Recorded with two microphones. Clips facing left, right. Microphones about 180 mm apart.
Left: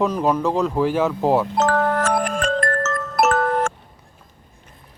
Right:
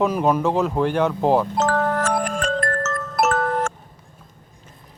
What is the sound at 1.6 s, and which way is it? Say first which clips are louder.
Glockenspiel: left 2 dB; 60° left (ahead or behind).